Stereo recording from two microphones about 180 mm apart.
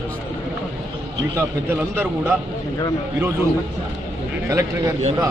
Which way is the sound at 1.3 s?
15° right (ahead or behind).